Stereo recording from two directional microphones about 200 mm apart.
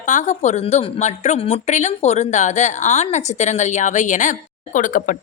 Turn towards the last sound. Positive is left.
turn(degrees=40)  # may be behind; listen again after turning